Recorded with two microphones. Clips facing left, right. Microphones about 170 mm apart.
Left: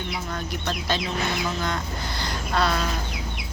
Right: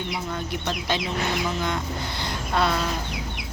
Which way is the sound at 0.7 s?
15° right (ahead or behind).